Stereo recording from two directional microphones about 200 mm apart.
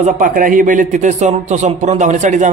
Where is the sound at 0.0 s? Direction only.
40° right (ahead or behind).